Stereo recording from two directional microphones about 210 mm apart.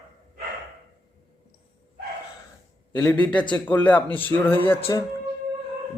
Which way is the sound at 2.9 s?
10° left (ahead or behind).